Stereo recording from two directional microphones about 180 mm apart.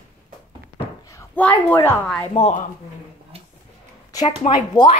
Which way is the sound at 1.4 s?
10° left (ahead or behind).